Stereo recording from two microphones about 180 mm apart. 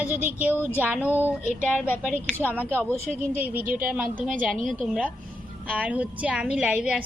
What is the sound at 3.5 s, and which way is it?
Speech, 50° right (ahead or behind).